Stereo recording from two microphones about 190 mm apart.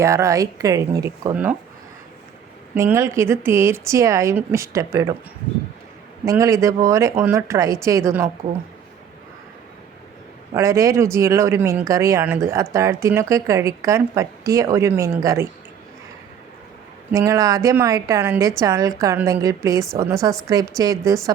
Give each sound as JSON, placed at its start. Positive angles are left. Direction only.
{"t": 0.0, "sound": "speech", "side_deg": -15}
{"t": 2.7, "sound": "speech", "side_deg": -15}
{"t": 6.2, "sound": "speech", "side_deg": -15}
{"t": 10.5, "sound": "speech", "side_deg": -15}
{"t": 17.1, "sound": "speech", "side_deg": -15}